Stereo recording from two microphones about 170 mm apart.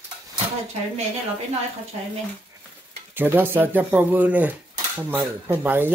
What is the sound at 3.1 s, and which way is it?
Speech, 10° right (ahead or behind).